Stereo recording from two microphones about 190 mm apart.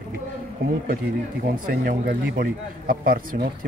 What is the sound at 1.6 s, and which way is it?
Speech, 55° right (ahead or behind).